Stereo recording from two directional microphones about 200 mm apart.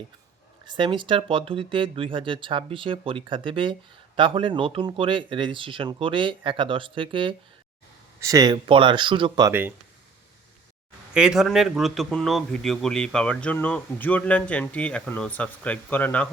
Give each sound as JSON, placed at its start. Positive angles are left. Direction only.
{"t": 0.6, "sound": "speech", "side_deg": -25}
{"t": 9.5, "sound": "speech", "side_deg": -10}
{"t": 11.1, "sound": "a man's voice", "side_deg": -5}